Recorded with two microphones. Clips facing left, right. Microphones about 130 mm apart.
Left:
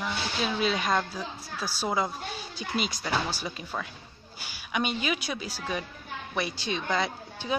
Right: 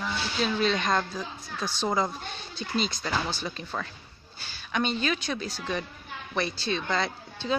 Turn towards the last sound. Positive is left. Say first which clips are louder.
# right 2 dB
turn(degrees=10)  # may be behind; listen again after turning